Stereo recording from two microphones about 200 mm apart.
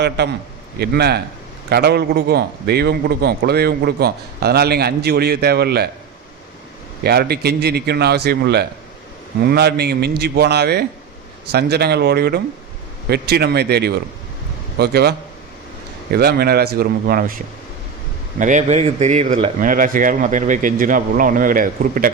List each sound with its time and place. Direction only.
0.2 s a man's voice: 55° right (ahead or behind)
7.0 s a man's voice: 50° right (ahead or behind)
16.1 s a man's voice: 50° right (ahead or behind)
18.3 s a man's voice: 40° right (ahead or behind)